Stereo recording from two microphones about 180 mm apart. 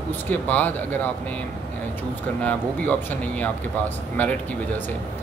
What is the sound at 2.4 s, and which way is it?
Speech, 10° left (ahead or behind).